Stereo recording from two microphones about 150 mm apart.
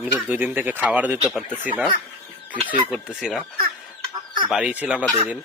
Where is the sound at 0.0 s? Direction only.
10° right (ahead or behind).